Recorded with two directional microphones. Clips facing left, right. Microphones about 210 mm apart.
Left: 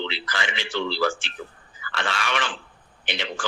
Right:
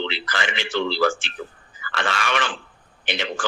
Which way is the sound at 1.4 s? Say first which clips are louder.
Right 3 dB; 55° right (ahead or behind).